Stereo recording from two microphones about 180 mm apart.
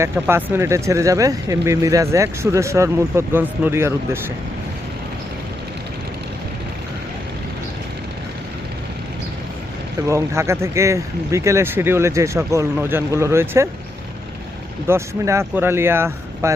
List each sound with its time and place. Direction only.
0.0 s speech: 10° right (ahead or behind)
10.1 s speech: 15° right (ahead or behind)
14.8 s speech: 15° right (ahead or behind)